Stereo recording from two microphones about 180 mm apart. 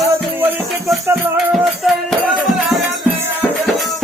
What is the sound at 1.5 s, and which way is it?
Music, centre (ahead or behind).